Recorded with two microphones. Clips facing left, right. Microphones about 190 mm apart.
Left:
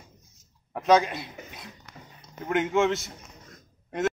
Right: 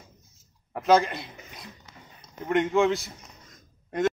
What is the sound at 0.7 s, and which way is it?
Speech, centre (ahead or behind).